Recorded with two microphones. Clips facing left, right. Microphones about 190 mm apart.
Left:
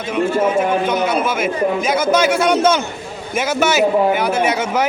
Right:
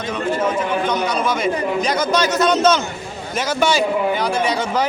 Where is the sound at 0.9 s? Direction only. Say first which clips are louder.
Left 2 dB; 5° left (ahead or behind).